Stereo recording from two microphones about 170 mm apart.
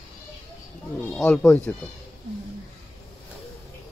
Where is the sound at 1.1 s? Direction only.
5° left (ahead or behind).